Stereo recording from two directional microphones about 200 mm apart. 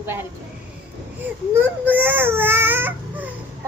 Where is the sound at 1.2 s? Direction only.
10° right (ahead or behind).